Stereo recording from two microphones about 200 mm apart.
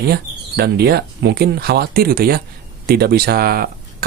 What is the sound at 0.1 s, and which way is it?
Speech, 55° right (ahead or behind).